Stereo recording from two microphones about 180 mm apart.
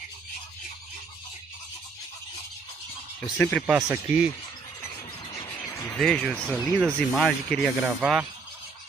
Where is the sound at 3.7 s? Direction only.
20° right (ahead or behind).